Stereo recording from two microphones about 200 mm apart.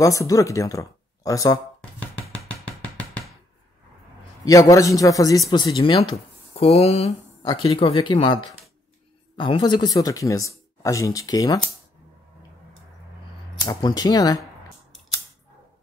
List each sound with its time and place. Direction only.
0.0 s speech: 15° left (ahead or behind)
2.2 s music: 5° left (ahead or behind)
4.5 s speech: 15° left (ahead or behind)
9.4 s speech: 25° left (ahead or behind)
13.7 s speech: 20° left (ahead or behind)